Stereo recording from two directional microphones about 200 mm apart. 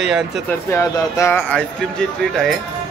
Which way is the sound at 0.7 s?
15° left (ahead or behind).